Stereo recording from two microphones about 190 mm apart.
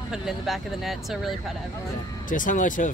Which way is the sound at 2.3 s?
45° left (ahead or behind).